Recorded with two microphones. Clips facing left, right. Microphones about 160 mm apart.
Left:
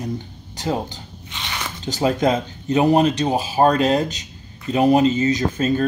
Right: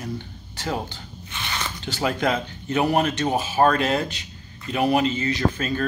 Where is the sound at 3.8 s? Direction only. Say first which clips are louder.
Left 5 dB; 40° left (ahead or behind).